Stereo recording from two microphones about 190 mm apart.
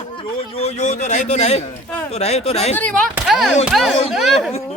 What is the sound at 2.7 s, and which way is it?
Speech, 5° left (ahead or behind).